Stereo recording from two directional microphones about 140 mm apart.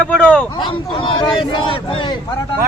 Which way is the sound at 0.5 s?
35° left (ahead or behind).